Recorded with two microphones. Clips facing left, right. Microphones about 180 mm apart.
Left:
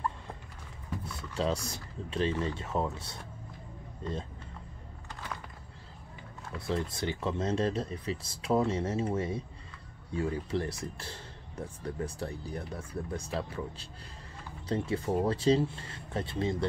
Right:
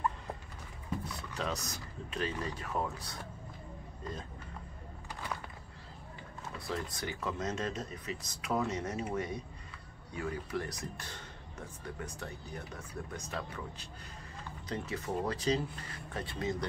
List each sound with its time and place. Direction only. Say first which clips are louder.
1.3 s speech: left 7 dB; 30° left (ahead or behind)
6.7 s speech: left 6 dB; 25° left (ahead or behind)